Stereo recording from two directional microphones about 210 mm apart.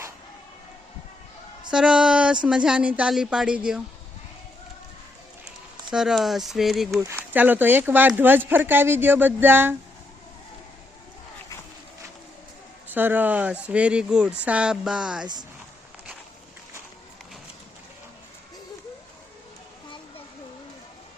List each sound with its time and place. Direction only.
1.7 s speech: 5° right (ahead or behind)
5.9 s speech: centre (ahead or behind)
12.9 s speech: 10° right (ahead or behind)